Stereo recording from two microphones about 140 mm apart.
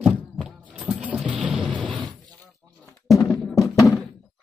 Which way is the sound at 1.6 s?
10° left (ahead or behind).